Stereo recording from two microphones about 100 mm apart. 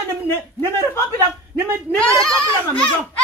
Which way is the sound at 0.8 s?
25° left (ahead or behind).